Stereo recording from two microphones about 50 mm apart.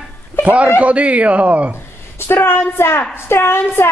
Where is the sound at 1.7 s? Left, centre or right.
Left.